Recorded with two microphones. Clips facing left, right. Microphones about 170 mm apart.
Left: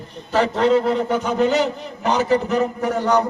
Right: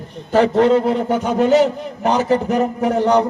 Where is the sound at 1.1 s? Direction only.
45° right (ahead or behind).